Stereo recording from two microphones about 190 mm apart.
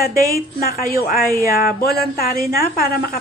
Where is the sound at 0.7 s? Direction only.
50° left (ahead or behind).